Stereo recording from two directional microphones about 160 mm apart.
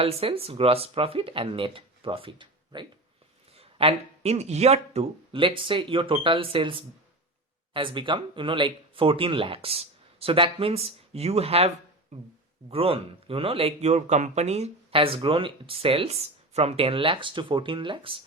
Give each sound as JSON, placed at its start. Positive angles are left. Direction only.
{"t": 0.0, "sound": "speech", "side_deg": -35}